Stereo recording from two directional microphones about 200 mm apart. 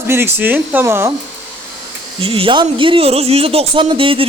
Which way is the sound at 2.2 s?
25° right (ahead or behind).